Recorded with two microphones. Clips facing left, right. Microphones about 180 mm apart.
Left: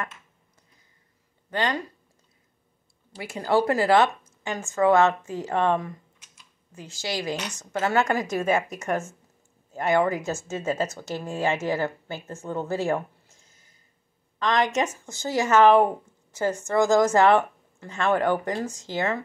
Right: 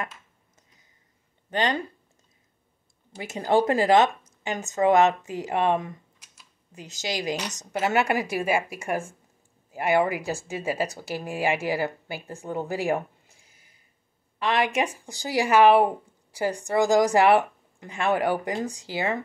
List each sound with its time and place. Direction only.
1.5 s speech: 25° right (ahead or behind)
3.2 s speech: 20° right (ahead or behind)
6.3 s a sound: 15° right (ahead or behind)
7.5 s speech: 15° right (ahead or behind)